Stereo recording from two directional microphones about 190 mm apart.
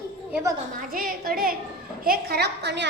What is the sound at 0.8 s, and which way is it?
A woman's voice, 50° right (ahead or behind).